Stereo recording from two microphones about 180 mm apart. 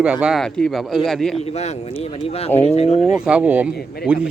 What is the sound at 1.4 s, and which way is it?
Speech, 35° left (ahead or behind).